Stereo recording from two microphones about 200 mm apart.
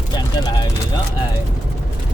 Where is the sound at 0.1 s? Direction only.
20° left (ahead or behind).